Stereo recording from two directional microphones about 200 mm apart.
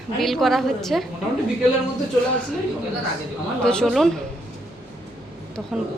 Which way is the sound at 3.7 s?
Centre (ahead or behind).